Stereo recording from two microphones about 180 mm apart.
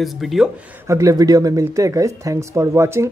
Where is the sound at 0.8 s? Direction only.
20° right (ahead or behind).